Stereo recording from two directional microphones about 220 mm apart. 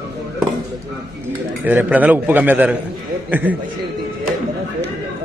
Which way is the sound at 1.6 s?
5° right (ahead or behind).